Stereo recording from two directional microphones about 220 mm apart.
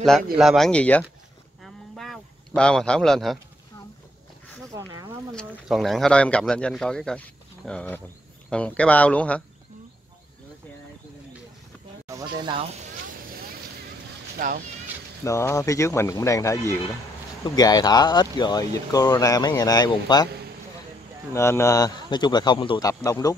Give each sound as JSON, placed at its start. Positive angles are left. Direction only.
{"t": 0.4, "sound": "speech", "side_deg": 0}
{"t": 1.6, "sound": "a sound", "side_deg": 0}
{"t": 4.7, "sound": "a sound", "side_deg": -15}
{"t": 5.3, "sound": "speech", "side_deg": 0}
{"t": 12.1, "sound": "speech", "side_deg": -20}
{"t": 14.4, "sound": "speech", "side_deg": -40}
{"t": 15.2, "sound": "speech", "side_deg": 15}
{"t": 21.3, "sound": "speech", "side_deg": 10}